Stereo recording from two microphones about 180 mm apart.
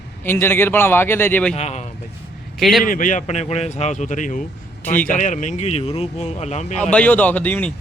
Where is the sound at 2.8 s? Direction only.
50° left (ahead or behind).